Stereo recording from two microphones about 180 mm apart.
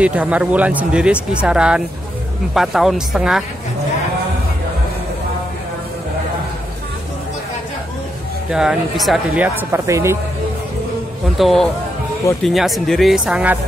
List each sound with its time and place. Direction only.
0.0 s speech: 5° right (ahead or behind)
8.5 s speech: 5° right (ahead or behind)
11.3 s speech: centre (ahead or behind)